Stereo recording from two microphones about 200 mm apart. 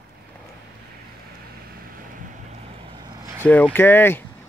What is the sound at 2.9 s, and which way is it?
Vehicle, 20° right (ahead or behind).